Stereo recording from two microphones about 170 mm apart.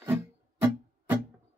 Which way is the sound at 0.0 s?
15° right (ahead or behind).